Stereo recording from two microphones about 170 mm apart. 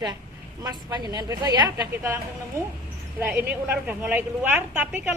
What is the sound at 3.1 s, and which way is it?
A woman's voice, 10° right (ahead or behind).